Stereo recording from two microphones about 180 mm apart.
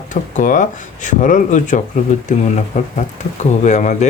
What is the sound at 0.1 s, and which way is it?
Speech, 45° left (ahead or behind).